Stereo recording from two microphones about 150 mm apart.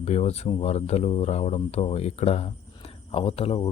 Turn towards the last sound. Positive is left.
turn(degrees=40)  # may be behind; listen again after turning